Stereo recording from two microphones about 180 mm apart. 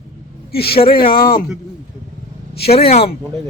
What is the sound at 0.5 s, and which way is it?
Speech, 60° left (ahead or behind).